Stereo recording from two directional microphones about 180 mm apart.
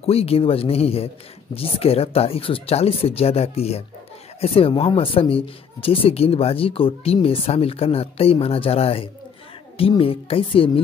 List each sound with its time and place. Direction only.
0.0 s speech: 35° left (ahead or behind)